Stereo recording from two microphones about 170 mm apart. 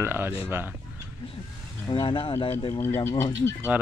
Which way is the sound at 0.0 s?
15° right (ahead or behind).